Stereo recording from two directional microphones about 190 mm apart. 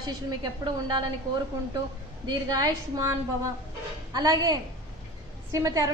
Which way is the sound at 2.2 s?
20° right (ahead or behind).